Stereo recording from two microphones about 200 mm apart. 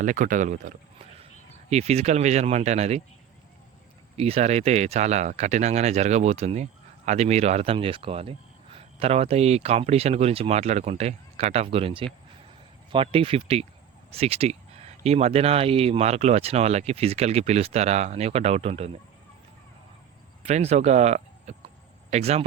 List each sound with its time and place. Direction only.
0.0 s speech: 40° right (ahead or behind)
4.2 s speech: 30° right (ahead or behind)
20.5 s speech: 35° right (ahead or behind)